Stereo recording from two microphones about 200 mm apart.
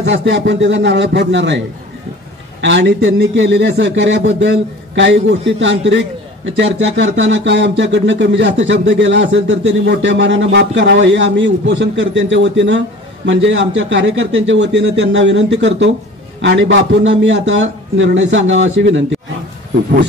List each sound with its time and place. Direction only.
0.0 s speech: 65° right (ahead or behind)
2.6 s a man's voice: 65° right (ahead or behind)